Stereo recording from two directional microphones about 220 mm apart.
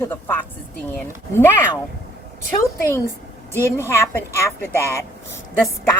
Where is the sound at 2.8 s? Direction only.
15° left (ahead or behind).